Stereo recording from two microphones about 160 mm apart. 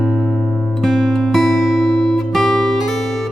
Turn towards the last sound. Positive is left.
turn(degrees=0)  # may be behind; listen again after turning